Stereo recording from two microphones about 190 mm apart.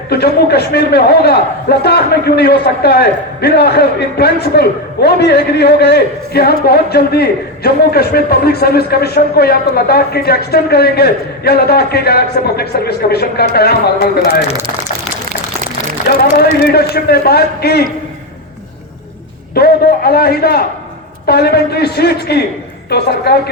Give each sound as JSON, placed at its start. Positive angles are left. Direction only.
{"t": 0.1, "sound": "a man's voice", "side_deg": 55}
{"t": 16.0, "sound": "a man's voice", "side_deg": 55}
{"t": 19.5, "sound": "a man's voice", "side_deg": 55}